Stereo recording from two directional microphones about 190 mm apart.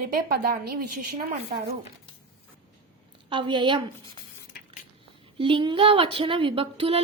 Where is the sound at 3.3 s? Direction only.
25° right (ahead or behind).